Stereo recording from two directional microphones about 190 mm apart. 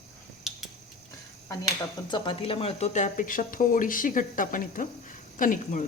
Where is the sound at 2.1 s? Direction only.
25° left (ahead or behind); by 5.8 s 45° left (ahead or behind).